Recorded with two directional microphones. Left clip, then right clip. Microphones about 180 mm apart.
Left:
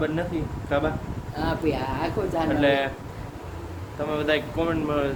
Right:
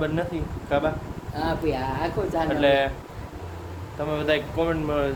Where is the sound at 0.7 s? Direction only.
20° right (ahead or behind).